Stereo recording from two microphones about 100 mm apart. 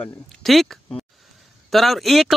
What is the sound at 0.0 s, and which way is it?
Speech, centre (ahead or behind).